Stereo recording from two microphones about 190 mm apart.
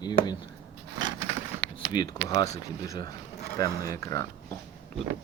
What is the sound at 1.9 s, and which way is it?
Speech, 20° left (ahead or behind).